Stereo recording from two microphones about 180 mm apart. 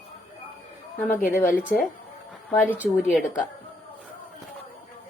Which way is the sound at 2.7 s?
5° right (ahead or behind).